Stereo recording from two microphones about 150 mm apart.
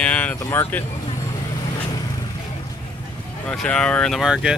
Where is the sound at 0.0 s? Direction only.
10° left (ahead or behind).